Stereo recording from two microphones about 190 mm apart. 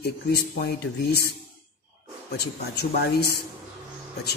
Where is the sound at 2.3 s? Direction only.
55° left (ahead or behind).